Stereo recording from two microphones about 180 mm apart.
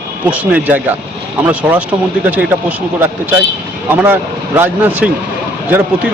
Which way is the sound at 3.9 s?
10° right (ahead or behind).